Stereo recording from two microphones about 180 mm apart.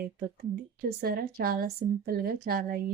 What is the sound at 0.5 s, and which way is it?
A woman's voice, 55° right (ahead or behind).